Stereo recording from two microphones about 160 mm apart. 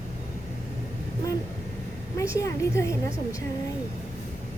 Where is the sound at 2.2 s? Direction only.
20° left (ahead or behind).